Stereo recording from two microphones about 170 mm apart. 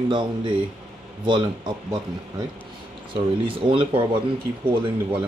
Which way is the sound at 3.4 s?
30° right (ahead or behind).